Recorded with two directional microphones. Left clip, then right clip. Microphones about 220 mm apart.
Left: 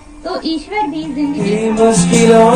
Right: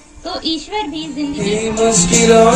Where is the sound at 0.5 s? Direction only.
Centre (ahead or behind).